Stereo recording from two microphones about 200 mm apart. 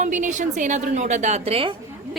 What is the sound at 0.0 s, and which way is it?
A woman's voice, 40° right (ahead or behind).